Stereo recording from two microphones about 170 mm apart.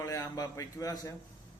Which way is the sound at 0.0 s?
20° left (ahead or behind).